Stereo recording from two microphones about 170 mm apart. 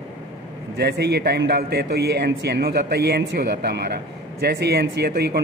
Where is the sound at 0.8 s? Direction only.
75° right (ahead or behind).